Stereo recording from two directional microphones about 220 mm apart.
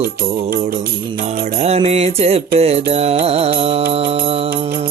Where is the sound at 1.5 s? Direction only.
30° right (ahead or behind).